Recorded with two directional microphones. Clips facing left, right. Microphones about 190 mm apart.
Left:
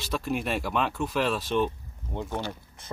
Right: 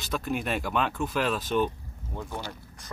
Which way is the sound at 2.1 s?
20° left (ahead or behind).